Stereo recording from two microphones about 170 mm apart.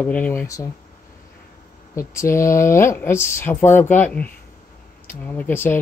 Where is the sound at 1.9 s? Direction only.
15° left (ahead or behind).